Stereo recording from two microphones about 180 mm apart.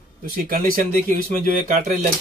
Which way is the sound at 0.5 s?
50° right (ahead or behind).